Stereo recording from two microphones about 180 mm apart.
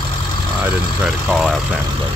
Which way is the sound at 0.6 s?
5° right (ahead or behind).